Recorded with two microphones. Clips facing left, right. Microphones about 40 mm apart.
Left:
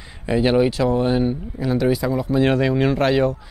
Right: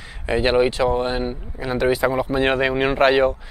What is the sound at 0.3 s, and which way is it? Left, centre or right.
Speech, right.